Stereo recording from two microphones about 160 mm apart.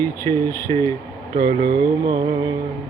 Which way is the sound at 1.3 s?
70° right (ahead or behind).